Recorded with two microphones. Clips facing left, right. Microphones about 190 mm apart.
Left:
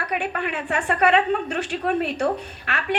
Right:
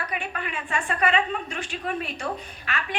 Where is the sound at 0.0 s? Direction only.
65° left (ahead or behind).